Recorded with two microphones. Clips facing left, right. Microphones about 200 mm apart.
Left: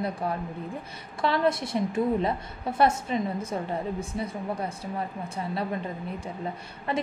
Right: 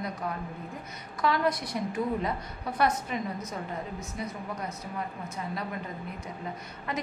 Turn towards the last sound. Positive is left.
turn(degrees=30)  # may be behind; listen again after turning